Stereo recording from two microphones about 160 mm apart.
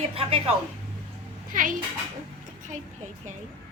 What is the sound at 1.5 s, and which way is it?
Speech, 55° right (ahead or behind).